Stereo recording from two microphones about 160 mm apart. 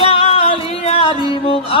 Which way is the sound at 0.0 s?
40° left (ahead or behind).